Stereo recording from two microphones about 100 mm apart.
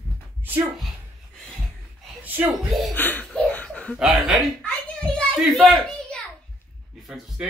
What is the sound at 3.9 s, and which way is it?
Speech, 10° right (ahead or behind).